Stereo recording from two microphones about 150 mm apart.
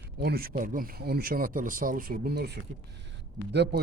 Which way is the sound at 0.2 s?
90° right.